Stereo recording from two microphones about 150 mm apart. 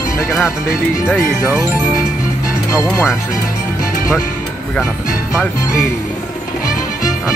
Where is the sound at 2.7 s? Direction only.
20° left (ahead or behind).